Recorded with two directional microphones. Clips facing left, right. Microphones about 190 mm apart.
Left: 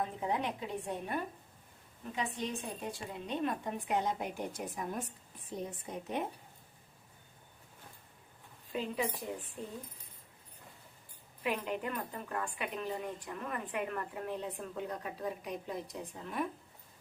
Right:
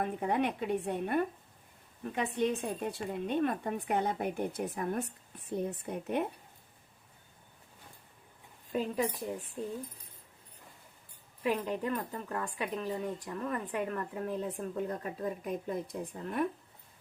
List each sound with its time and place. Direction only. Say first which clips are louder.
0.0 s a woman's voice: right 4 dB; 60° right (ahead or behind)
8.7 s a woman's voice: right 4 dB; 45° right (ahead or behind)
11.4 s a woman's voice: right 4 dB; 35° right (ahead or behind); by 16.4 s 50° right (ahead or behind)